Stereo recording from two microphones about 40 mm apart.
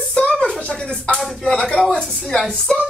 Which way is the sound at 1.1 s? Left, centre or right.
Centre.